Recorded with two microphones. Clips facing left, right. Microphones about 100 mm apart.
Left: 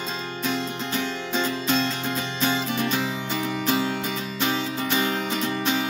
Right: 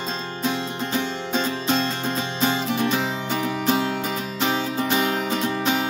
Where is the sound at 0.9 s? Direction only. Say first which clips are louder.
Right 2 dB; 30° right (ahead or behind).